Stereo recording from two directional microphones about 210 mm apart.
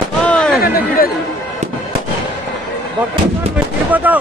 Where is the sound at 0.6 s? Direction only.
45° left (ahead or behind).